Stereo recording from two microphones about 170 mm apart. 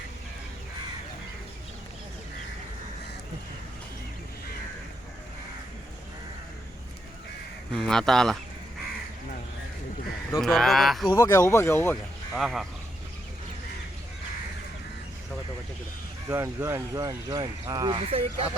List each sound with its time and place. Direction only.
7.7 s speech: 5° left (ahead or behind)
10.3 s speech: centre (ahead or behind)
11.1 s speech: 20° left (ahead or behind)
12.3 s speech: centre (ahead or behind)
16.3 s speech: 15° right (ahead or behind); by 18.4 s 35° right (ahead or behind)